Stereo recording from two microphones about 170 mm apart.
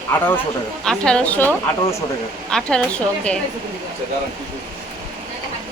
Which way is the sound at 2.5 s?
5° left (ahead or behind).